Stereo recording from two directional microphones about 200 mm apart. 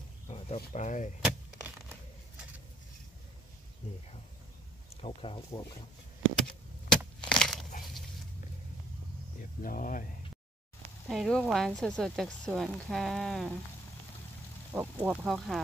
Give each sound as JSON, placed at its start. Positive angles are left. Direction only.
{"t": 0.7, "sound": "speech", "side_deg": 40}
{"t": 1.2, "sound": "a sound", "side_deg": -5}
{"t": 5.0, "sound": "speech", "side_deg": 30}
{"t": 6.9, "sound": "crushing", "side_deg": 5}
{"t": 9.6, "sound": "speech", "side_deg": 45}
{"t": 11.1, "sound": "speech", "side_deg": 0}
{"t": 14.7, "sound": "speech", "side_deg": -5}